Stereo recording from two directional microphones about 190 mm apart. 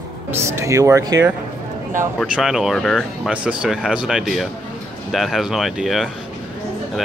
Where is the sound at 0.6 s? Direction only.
15° right (ahead or behind).